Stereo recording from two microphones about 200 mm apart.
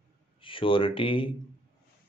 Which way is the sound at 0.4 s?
25° left (ahead or behind).